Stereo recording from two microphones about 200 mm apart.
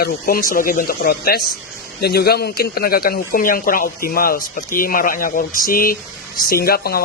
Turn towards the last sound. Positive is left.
turn(degrees=50)  # may be behind; listen again after turning